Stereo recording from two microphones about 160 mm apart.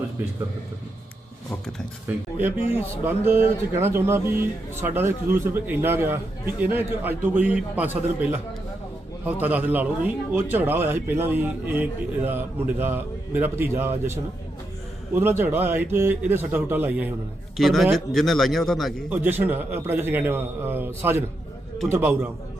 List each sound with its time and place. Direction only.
1.6 s speech: 5° right (ahead or behind)
2.6 s a man's voice: 40° left (ahead or behind)
3.2 s speech: 15° right (ahead or behind)
15.1 s speech: 15° right (ahead or behind)
17.6 s speech: centre (ahead or behind)
19.1 s speech: 10° right (ahead or behind)